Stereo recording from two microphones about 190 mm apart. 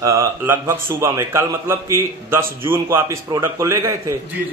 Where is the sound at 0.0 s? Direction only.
15° right (ahead or behind).